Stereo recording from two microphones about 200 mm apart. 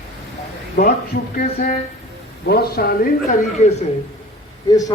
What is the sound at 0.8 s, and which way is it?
Speech, 45° left (ahead or behind).